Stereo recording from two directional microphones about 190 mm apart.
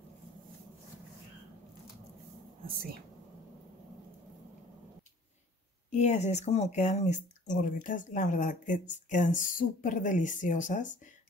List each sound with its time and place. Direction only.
5.9 s speech: 40° left (ahead or behind)